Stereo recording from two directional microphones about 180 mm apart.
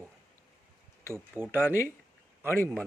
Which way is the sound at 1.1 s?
10° right (ahead or behind).